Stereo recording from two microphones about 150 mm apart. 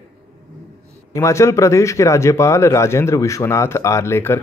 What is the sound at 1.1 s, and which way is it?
Speech, 20° left (ahead or behind).